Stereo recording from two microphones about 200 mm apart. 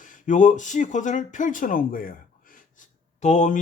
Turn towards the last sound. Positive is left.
turn(degrees=40)  # may be behind; listen again after turning